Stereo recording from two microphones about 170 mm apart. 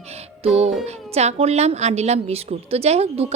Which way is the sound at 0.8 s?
40° right (ahead or behind).